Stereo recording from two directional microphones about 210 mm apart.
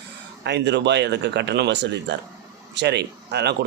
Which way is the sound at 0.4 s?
55° right (ahead or behind).